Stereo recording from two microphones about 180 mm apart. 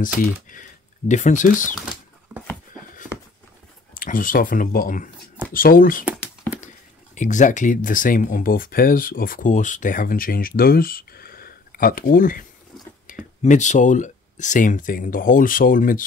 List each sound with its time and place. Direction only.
0.0 s speech: 45° left (ahead or behind)
3.9 s speech: 50° left (ahead or behind)
6.1 s whispering: 10° left (ahead or behind)
7.2 s speech: 45° left (ahead or behind)